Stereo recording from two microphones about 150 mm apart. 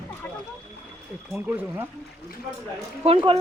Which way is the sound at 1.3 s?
15° right (ahead or behind).